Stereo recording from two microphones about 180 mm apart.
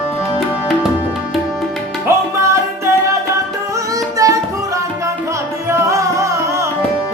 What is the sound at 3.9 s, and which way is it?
Music, 20° right (ahead or behind).